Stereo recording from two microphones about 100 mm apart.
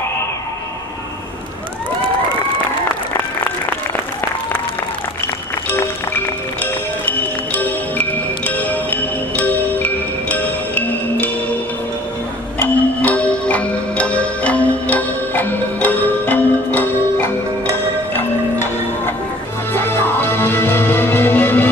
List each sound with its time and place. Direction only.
6.6 s music: 20° left (ahead or behind)
12.5 s music: 15° left (ahead or behind)
18.1 s music: 20° left (ahead or behind)